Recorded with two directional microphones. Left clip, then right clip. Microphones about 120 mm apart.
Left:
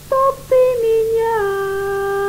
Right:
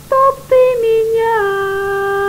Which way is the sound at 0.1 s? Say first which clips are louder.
Right 4 dB; 25° right (ahead or behind).